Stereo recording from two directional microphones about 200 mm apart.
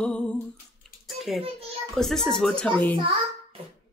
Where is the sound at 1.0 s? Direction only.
Centre (ahead or behind).